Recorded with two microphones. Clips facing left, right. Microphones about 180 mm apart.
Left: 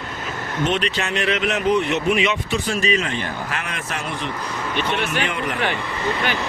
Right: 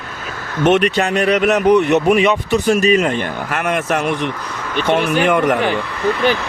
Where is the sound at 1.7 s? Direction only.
65° right (ahead or behind).